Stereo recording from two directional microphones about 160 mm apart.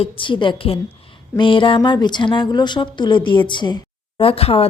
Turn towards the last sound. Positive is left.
turn(degrees=35)  # may be behind; listen again after turning